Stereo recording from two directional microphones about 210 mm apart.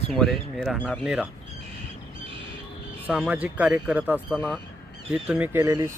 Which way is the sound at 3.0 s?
5° right (ahead or behind).